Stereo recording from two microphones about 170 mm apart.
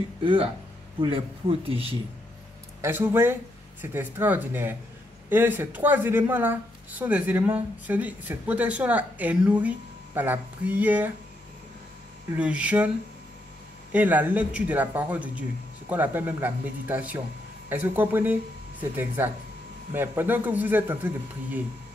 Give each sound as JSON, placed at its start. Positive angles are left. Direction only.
{"t": 0.2, "sound": "speech", "side_deg": -30}
{"t": 2.8, "sound": "speech", "side_deg": -15}
{"t": 12.4, "sound": "speech", "side_deg": -5}
{"t": 13.9, "sound": "speech", "side_deg": -10}